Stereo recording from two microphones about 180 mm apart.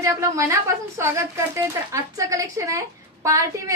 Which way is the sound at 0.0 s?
15° right (ahead or behind).